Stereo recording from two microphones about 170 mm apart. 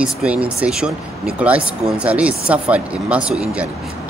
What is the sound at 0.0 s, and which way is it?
Speech, 5° right (ahead or behind).